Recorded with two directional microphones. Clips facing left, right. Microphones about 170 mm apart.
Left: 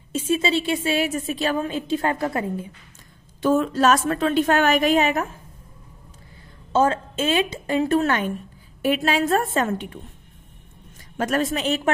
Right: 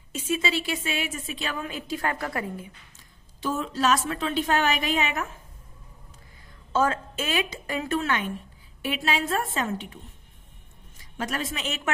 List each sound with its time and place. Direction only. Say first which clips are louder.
0.1 s a woman's voice: left 6 dB; 30° left (ahead or behind)
3.3 s a woman's voice: left 9 dB; 55° left (ahead or behind); by 5.3 s 40° left (ahead or behind)
6.7 s a woman's voice: left 5 dB; 25° left (ahead or behind)
8.0 s a woman's voice: left 6 dB; 45° left (ahead or behind)
11.0 s a woman's voice: left 8 dB; 50° left (ahead or behind)